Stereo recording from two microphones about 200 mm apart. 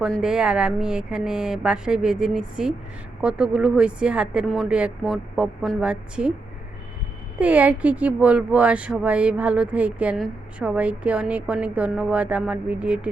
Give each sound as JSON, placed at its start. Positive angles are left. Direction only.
{"t": 0.0, "sound": "speech", "side_deg": -5}
{"t": 7.3, "sound": "speech", "side_deg": -5}